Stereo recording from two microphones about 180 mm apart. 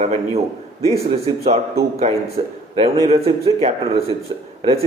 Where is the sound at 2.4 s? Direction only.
25° right (ahead or behind).